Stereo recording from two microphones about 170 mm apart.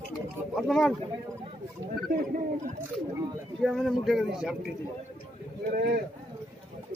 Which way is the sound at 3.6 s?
Centre (ahead or behind).